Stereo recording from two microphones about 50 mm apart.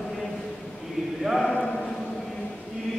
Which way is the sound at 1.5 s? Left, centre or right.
Centre.